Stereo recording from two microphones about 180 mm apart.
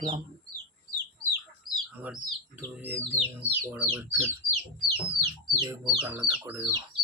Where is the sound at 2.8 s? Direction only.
15° right (ahead or behind).